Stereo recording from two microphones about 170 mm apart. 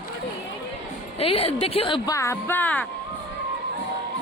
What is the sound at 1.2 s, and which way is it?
Speech, 35° left (ahead or behind).